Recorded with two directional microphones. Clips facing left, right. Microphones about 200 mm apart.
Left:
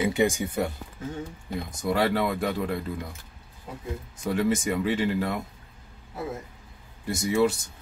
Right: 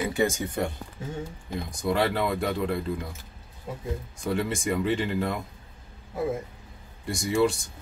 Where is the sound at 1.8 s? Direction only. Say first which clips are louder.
Left 1 dB; centre (ahead or behind).